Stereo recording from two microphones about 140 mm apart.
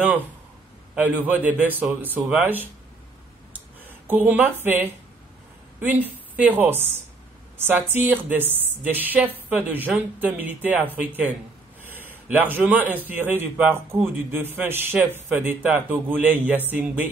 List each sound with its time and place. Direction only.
0.9 s speech: 10° right (ahead or behind)
3.8 s a woman's voice: 15° right (ahead or behind)